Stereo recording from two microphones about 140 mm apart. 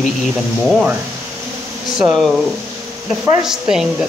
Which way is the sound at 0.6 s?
Centre (ahead or behind).